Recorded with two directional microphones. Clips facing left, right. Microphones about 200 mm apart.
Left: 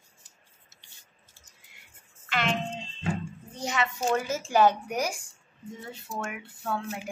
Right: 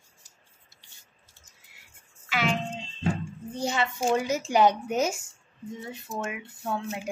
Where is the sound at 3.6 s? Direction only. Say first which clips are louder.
Right 2 dB; 30° right (ahead or behind).